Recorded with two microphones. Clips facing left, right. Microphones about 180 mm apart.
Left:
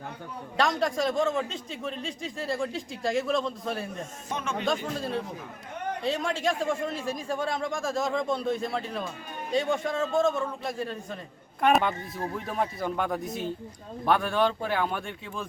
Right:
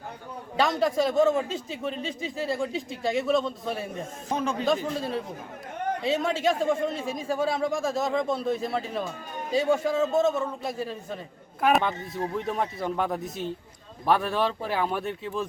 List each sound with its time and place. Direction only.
0.5 s a man's voice: centre (ahead or behind)
4.3 s speech: 35° right (ahead or behind)
4.6 s a man's voice: centre (ahead or behind)